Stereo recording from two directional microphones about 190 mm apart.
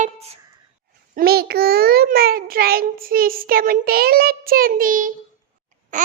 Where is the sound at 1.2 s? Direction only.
55° right (ahead or behind).